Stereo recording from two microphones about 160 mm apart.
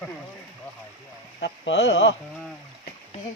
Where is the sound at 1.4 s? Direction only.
90° left.